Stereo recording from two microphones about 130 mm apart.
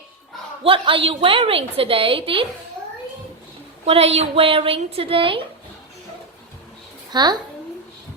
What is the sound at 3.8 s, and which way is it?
A woman's voice, 50° right (ahead or behind).